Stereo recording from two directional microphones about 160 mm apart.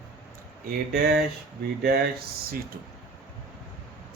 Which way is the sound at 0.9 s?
75° right (ahead or behind).